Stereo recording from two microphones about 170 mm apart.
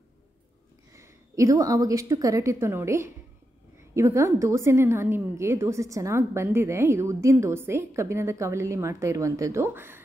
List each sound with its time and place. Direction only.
0.9 s a woman's voice: 15° right (ahead or behind)